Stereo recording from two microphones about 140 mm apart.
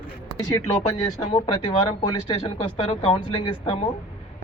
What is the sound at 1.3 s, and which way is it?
Speech, 40° left (ahead or behind).